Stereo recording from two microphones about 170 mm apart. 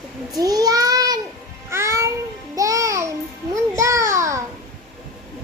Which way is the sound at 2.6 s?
20° right (ahead or behind).